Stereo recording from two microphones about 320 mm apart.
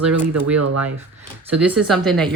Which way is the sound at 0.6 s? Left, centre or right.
Right.